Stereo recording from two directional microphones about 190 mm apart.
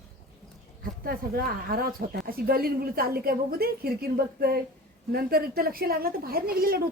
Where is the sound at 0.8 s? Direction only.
50° right (ahead or behind).